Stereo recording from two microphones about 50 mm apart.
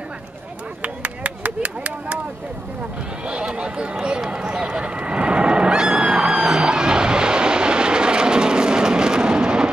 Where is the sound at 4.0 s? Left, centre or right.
Centre.